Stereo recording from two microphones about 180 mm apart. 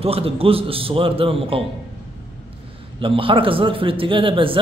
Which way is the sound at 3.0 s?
30° right (ahead or behind).